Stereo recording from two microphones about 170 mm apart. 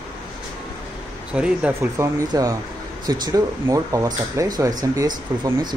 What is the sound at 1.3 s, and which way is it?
Speech, 5° right (ahead or behind).